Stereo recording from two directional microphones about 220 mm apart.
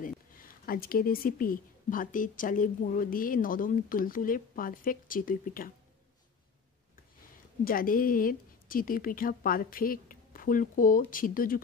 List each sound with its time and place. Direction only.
0.7 s a woman's voice: 40° left (ahead or behind)
7.6 s a woman's voice: 40° left (ahead or behind)